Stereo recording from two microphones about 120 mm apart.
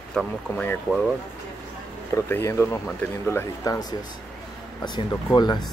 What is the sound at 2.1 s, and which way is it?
Speech, 20° left (ahead or behind).